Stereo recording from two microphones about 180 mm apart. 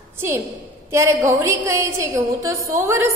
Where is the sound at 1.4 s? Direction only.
15° right (ahead or behind).